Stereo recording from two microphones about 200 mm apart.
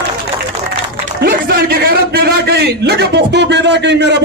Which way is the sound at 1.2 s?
50° right (ahead or behind).